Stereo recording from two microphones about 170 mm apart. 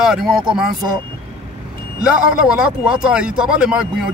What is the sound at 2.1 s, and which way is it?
Speech, 5° right (ahead or behind).